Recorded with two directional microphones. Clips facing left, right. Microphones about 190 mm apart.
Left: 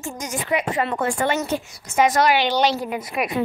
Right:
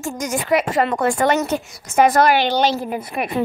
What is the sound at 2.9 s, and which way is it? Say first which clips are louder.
Speech: right 2 dB; 30° right (ahead or behind).